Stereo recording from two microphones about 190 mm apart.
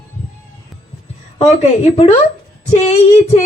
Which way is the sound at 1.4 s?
30° left (ahead or behind).